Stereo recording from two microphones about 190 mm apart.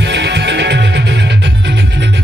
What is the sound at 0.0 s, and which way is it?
Music, 65° right (ahead or behind).